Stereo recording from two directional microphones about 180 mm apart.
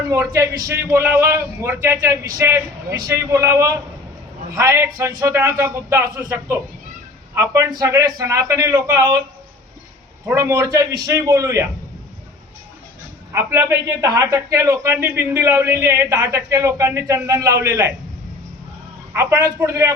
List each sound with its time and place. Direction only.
0.1 s a man's voice: 15° right (ahead or behind)
10.2 s a man's voice: 15° right (ahead or behind)
13.3 s a man's voice: 15° right (ahead or behind)
19.1 s a man's voice: 15° right (ahead or behind)